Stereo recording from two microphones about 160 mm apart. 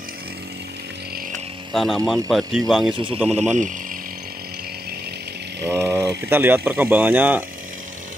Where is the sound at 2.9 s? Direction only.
30° right (ahead or behind).